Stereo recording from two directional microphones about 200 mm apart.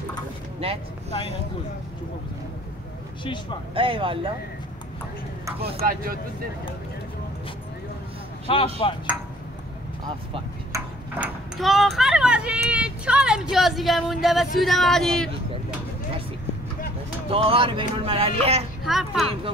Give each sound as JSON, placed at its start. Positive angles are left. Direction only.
{"t": 0.6, "sound": "speech", "side_deg": -30}
{"t": 3.7, "sound": "speech", "side_deg": -25}
{"t": 5.8, "sound": "speech", "side_deg": -45}
{"t": 8.5, "sound": "speech", "side_deg": 25}
{"t": 10.0, "sound": "vehicle", "side_deg": -20}
{"t": 11.1, "sound": "speech", "side_deg": 0}
{"t": 17.3, "sound": "speech", "side_deg": -30}
{"t": 18.9, "sound": "speech", "side_deg": 0}